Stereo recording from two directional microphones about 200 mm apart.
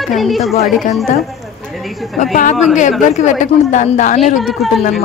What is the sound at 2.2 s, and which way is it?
A woman's voice, 40° left (ahead or behind).